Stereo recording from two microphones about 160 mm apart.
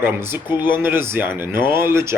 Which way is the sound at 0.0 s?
15° right (ahead or behind).